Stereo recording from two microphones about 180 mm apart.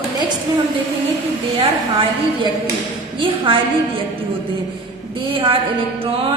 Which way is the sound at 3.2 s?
30° right (ahead or behind).